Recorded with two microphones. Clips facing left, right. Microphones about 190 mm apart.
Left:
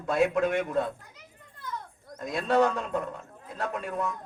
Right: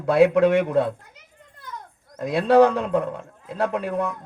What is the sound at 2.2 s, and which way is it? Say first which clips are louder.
A man's voice: right 8 dB; 70° right (ahead or behind).